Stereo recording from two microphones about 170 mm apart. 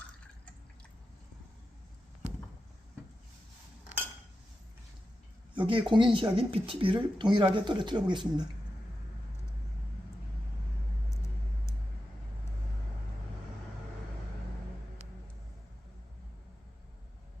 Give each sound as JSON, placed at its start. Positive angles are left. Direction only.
{"t": 5.5, "sound": "speech", "side_deg": -30}